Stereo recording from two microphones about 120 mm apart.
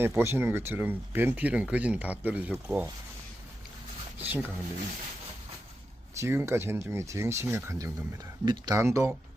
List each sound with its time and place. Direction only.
0.0 s speech: 20° right (ahead or behind)
4.2 s speech: 15° right (ahead or behind)
6.1 s speech: 20° right (ahead or behind)